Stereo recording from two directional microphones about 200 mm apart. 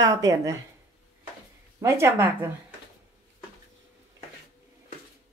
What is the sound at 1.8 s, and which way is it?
Speech, 15° right (ahead or behind).